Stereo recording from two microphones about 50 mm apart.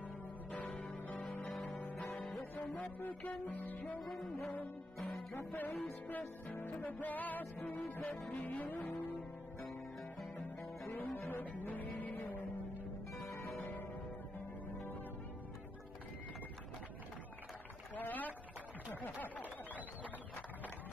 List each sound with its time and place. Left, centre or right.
0.5 s music: left
0.9 s music: left
4.0 s music: centre
5.3 s music: left
10.9 s music: left
17.9 s a sound: left